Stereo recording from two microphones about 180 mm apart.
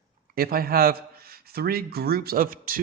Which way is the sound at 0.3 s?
55° right (ahead or behind).